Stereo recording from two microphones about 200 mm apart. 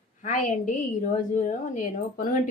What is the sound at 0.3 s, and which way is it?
Speech, 40° left (ahead or behind).